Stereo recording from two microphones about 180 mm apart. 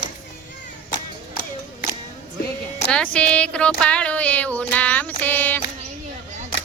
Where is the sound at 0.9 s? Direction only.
50° left (ahead or behind).